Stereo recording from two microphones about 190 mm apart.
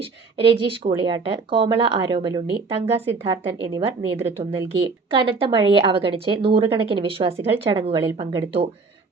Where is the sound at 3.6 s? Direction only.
30° right (ahead or behind).